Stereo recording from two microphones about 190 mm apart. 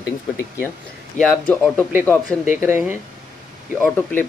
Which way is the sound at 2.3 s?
10° right (ahead or behind).